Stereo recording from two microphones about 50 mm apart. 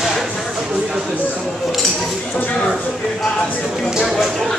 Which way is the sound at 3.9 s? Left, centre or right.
Centre.